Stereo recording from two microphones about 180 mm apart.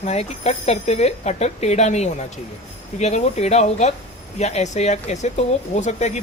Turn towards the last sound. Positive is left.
turn(degrees=40)  # may be behind; listen again after turning